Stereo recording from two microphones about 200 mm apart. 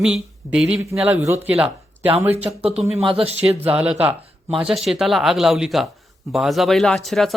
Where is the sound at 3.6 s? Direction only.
5° right (ahead or behind).